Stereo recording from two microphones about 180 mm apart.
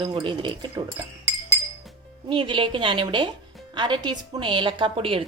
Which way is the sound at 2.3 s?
25° right (ahead or behind).